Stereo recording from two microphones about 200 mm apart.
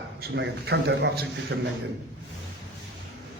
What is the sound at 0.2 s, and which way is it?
A man's voice, 55° right (ahead or behind).